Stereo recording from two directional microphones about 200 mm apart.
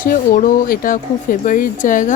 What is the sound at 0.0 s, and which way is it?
Speech, 40° left (ahead or behind).